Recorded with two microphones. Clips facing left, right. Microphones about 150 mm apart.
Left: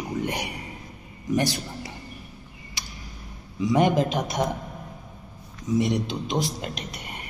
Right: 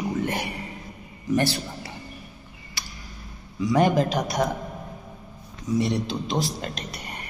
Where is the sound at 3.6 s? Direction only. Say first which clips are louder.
Even; 20° left (ahead or behind).